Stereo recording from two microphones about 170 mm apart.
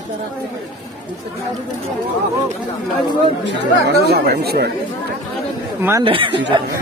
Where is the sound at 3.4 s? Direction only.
75° right (ahead or behind).